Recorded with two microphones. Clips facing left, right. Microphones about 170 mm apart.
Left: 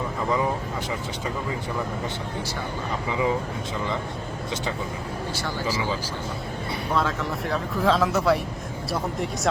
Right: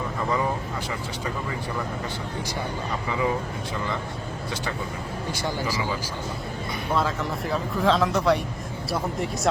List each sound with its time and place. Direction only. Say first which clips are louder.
3.1 s speech: left 1 dB; 20° left (ahead or behind)
5.3 s speech: right 1 dB; 15° right (ahead or behind)
6.9 s speech: even; centre (ahead or behind)